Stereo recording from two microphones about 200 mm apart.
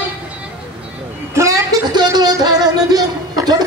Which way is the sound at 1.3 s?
15° right (ahead or behind).